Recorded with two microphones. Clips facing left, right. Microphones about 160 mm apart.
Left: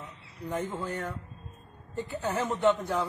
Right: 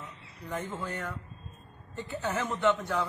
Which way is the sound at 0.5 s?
10° left (ahead or behind).